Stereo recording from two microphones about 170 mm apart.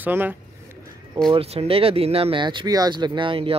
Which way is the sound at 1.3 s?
35° right (ahead or behind).